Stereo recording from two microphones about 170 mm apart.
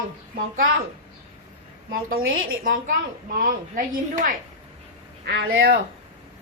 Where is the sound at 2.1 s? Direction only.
60° right (ahead or behind).